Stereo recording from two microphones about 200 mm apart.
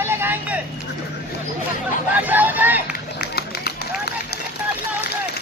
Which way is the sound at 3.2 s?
55° left (ahead or behind).